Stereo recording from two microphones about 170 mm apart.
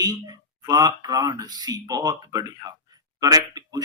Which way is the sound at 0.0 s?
20° right (ahead or behind).